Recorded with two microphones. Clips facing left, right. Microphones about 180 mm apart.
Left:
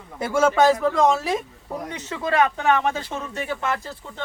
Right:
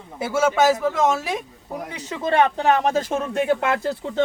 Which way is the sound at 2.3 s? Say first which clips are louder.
Right 2 dB; 30° right (ahead or behind).